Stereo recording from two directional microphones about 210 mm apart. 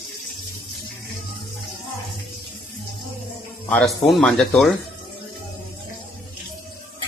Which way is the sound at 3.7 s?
5° left (ahead or behind).